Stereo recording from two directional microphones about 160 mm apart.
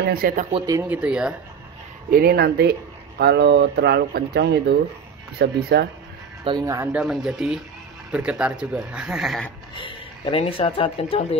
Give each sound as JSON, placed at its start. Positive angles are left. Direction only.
{"t": 0.1, "sound": "speech", "side_deg": -65}
{"t": 0.7, "sound": "speech", "side_deg": -20}
{"t": 0.9, "sound": "speech", "side_deg": -5}
{"t": 2.0, "sound": "speech", "side_deg": -70}
{"t": 5.4, "sound": "speech", "side_deg": -75}
{"t": 6.6, "sound": "speech", "side_deg": -20}
{"t": 6.9, "sound": "speech", "side_deg": -5}
{"t": 9.8, "sound": "speech", "side_deg": 30}